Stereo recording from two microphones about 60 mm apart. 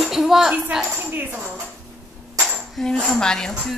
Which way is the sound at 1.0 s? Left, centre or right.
Right.